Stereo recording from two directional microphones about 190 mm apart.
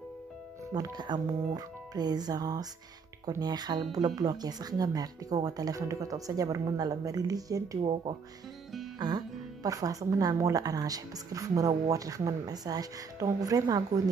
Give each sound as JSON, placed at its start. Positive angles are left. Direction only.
{"t": 0.7, "sound": "speech", "side_deg": -20}
{"t": 9.0, "sound": "speech", "side_deg": -20}